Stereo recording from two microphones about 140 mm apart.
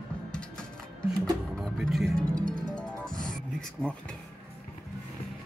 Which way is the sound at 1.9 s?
Centre (ahead or behind).